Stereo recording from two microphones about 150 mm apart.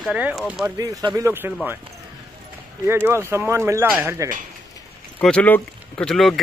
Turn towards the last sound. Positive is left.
turn(degrees=5)  # may be behind; listen again after turning